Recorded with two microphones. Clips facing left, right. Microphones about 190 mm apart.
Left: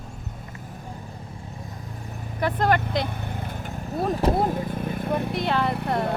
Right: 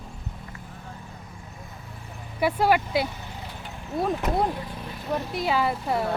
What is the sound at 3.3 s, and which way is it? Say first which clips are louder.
Vehicle: left 6 dB; 55° left (ahead or behind).